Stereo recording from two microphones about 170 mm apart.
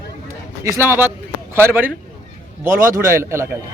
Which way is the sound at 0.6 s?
15° right (ahead or behind).